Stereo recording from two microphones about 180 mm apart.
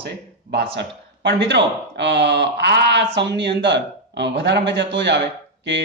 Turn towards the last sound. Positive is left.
turn(degrees=-75)  # may be behind; listen again after turning